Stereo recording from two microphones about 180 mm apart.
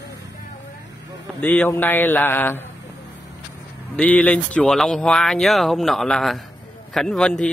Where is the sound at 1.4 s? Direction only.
10° left (ahead or behind).